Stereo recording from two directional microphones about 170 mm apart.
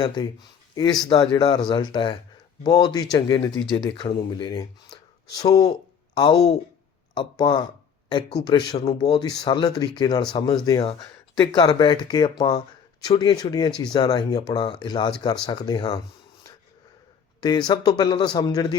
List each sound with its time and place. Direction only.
0.0 s speech: 25° left (ahead or behind)
4.9 s a sound: 25° left (ahead or behind)
5.4 s speech: 25° left (ahead or behind)
17.7 s speech: 25° left (ahead or behind)